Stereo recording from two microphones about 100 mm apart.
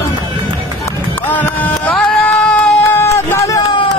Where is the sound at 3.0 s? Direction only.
25° left (ahead or behind).